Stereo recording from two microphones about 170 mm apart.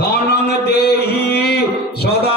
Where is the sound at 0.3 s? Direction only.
75° left (ahead or behind).